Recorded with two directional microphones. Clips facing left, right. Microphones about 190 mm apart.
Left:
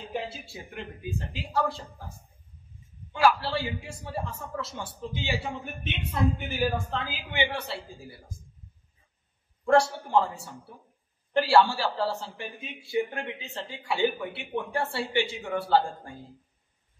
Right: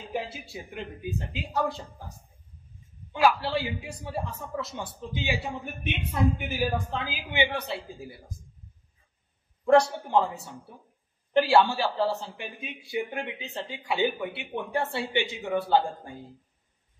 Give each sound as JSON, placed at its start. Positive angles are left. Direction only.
{"t": 0.1, "sound": "a man's voice", "side_deg": -15}
{"t": 9.7, "sound": "a man's voice", "side_deg": -20}